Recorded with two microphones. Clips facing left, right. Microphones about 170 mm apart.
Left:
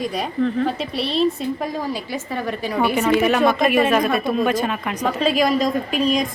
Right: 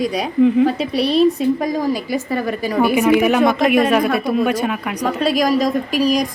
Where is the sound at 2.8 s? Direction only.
10° right (ahead or behind).